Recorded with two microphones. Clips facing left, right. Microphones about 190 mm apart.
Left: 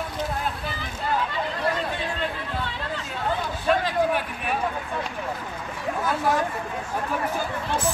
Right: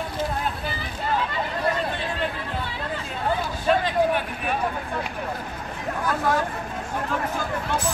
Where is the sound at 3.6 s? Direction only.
Centre (ahead or behind).